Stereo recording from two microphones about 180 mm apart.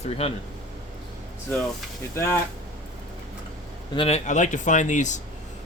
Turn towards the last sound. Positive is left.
turn(degrees=40)  # may be behind; listen again after turning